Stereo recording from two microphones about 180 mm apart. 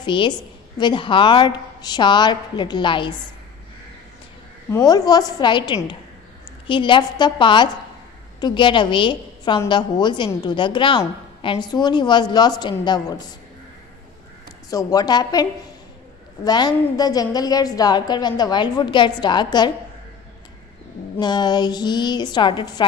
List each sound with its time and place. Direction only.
0.0 s a woman's voice: 25° left (ahead or behind)
4.6 s a woman's voice: 15° left (ahead or behind)
14.7 s a woman's voice: 20° left (ahead or behind)
16.4 s a woman's voice: 20° left (ahead or behind)
21.2 s a woman's voice: 25° left (ahead or behind)